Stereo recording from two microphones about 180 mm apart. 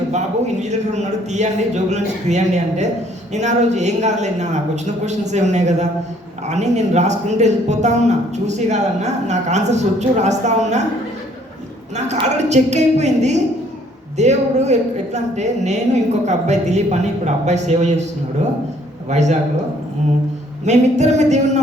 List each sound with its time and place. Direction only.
0.1 s a man's voice: 40° right (ahead or behind)
12.5 s a man's voice: 40° right (ahead or behind)
20.7 s a man's voice: 40° right (ahead or behind)